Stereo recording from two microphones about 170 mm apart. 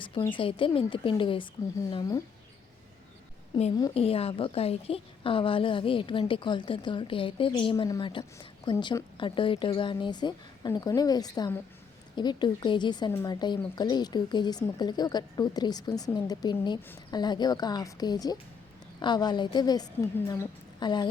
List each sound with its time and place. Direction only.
0.0 s a sound: 30° left (ahead or behind)
0.3 s a woman's voice: 30° left (ahead or behind)
3.5 s speech: 25° left (ahead or behind)
3.9 s a woman's voice: 35° left (ahead or behind)